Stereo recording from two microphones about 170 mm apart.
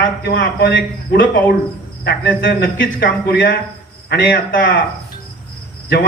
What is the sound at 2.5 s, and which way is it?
A man's voice, 60° left (ahead or behind).